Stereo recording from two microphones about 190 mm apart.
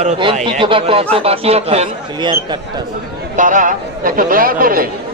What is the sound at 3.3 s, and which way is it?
Speech, 40° right (ahead or behind).